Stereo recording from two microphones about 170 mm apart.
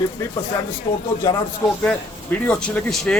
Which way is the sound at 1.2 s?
20° left (ahead or behind).